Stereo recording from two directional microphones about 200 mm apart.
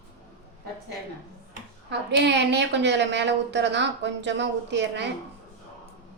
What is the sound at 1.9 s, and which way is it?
A woman's voice, 60° right (ahead or behind).